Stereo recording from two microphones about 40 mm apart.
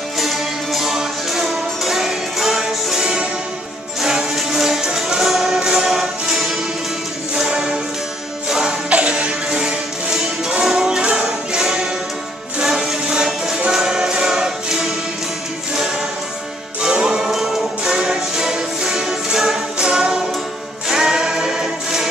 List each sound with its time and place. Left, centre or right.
0.2 s music: centre
5.6 s music: centre
7.4 s music: right
8.9 s music: right; by 14.8 s centre
16.8 s music: centre